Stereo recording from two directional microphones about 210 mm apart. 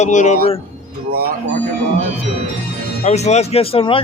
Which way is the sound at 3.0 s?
30° left (ahead or behind).